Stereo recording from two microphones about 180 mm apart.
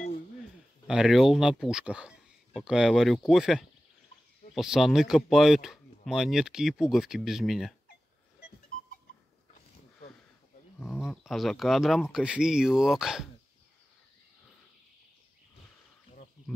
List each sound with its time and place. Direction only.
0.8 s speech: centre (ahead or behind)
10.8 s speech: centre (ahead or behind)